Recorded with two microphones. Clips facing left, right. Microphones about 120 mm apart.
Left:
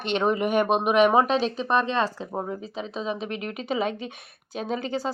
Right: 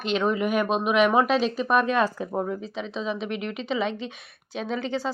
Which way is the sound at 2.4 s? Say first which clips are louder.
Right 2 dB; 40° left (ahead or behind).